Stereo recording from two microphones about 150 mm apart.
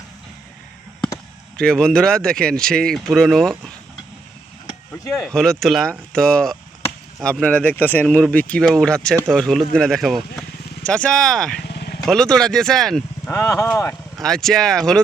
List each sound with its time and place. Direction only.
1.5 s speech: 5° left (ahead or behind)
5.2 s speech: 5° left (ahead or behind)
11.6 s vehicle: 90° left
12.0 s speech: 5° left (ahead or behind)
13.3 s speech: 20° left (ahead or behind)
14.2 s speech: 5° left (ahead or behind)